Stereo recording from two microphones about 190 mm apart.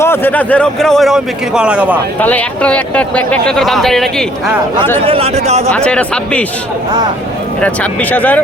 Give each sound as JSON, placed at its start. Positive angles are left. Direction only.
{"t": 0.0, "sound": "speech", "side_deg": 10}
{"t": 2.2, "sound": "speech", "side_deg": 5}
{"t": 5.0, "sound": "speech", "side_deg": -30}
{"t": 5.7, "sound": "speech", "side_deg": 5}
{"t": 8.1, "sound": "speech", "side_deg": 10}